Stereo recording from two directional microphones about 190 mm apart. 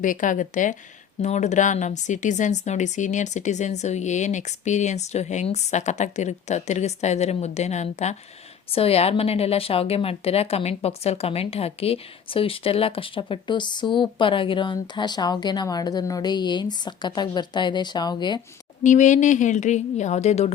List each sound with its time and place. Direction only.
0.0 s a woman's voice: 45° left (ahead or behind); by 18.3 s 20° left (ahead or behind)
18.8 s speech: 40° left (ahead or behind)